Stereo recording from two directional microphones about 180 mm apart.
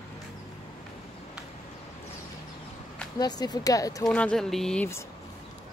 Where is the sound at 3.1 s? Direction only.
20° left (ahead or behind).